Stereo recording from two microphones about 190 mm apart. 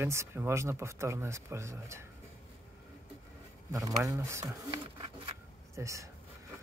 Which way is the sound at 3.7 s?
15° right (ahead or behind).